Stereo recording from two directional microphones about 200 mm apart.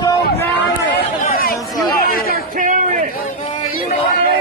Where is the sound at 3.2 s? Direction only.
35° left (ahead or behind).